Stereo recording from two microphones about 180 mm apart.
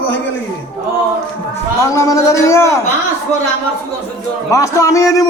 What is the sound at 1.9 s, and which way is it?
Speech, 15° left (ahead or behind).